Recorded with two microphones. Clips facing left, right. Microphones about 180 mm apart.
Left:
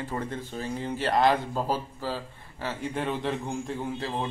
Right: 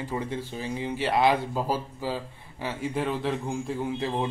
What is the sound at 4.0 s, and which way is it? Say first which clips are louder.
Speech: right 3 dB; 15° right (ahead or behind).